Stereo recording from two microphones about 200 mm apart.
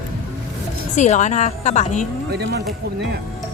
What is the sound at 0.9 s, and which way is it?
A woman's voice, 35° left (ahead or behind).